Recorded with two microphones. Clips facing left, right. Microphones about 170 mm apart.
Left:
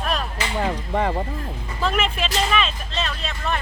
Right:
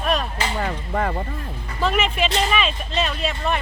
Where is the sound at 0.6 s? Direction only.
10° left (ahead or behind).